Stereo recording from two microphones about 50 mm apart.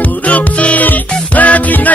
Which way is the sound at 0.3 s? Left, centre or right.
Left.